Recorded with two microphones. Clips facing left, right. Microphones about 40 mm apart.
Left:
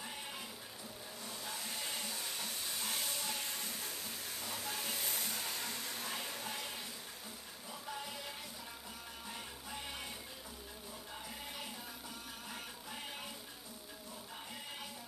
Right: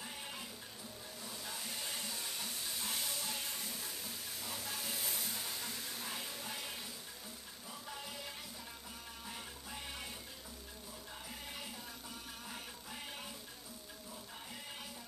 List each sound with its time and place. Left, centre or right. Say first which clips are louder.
0.0 s music: left 1 dB; centre
1.2 s steam: left 1 dB; centre
3.3 s train: left 1 dB; centre
4.4 s steam: left 2 dB; centre
4.7 s a sound: left 1 dB; centre
5.6 s a sound: left 2 dB; left
6.0 s a sound: left 2 dB; centre
9.3 s music: left 2 dB; centre
12.4 s music: left 2 dB; centre